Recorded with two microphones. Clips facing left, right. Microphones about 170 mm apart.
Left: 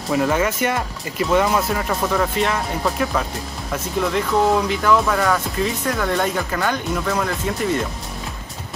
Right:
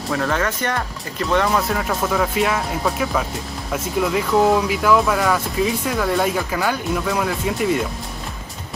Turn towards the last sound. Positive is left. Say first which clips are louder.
# right 1 dB
turn(degrees=-5)  # may be behind; listen again after turning